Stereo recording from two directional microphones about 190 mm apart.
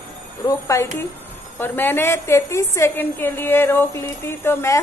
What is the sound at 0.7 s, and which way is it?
A woman's voice, 15° left (ahead or behind).